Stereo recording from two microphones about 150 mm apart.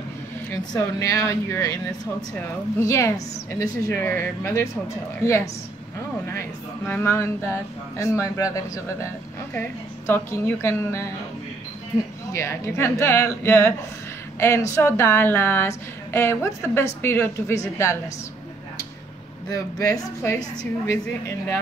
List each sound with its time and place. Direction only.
0.7 s a woman's voice: 20° left (ahead or behind)
2.8 s a woman's voice: 20° left (ahead or behind)
6.9 s a woman's voice: 15° left (ahead or behind)
12.3 s a woman's voice: 20° left (ahead or behind)
19.5 s a woman's voice: 20° left (ahead or behind)